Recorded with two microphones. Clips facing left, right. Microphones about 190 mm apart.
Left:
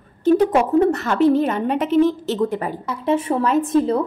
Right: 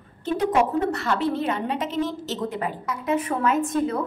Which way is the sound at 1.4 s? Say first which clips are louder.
Left 6 dB; 50° left (ahead or behind).